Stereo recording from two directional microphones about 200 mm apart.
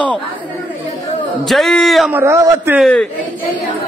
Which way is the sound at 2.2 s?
15° right (ahead or behind).